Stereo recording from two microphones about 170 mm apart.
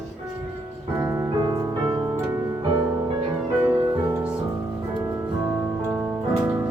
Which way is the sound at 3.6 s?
20° right (ahead or behind).